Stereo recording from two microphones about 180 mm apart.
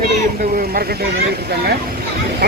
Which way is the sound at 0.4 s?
55° right (ahead or behind).